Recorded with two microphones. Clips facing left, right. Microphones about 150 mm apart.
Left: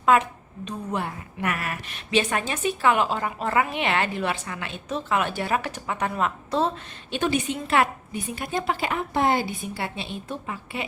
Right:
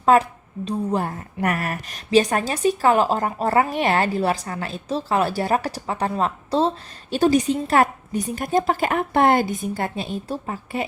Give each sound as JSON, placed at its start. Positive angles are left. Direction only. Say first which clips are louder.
{"t": 0.0, "sound": "a woman's voice", "louder": "right 3 dB", "side_deg": -35}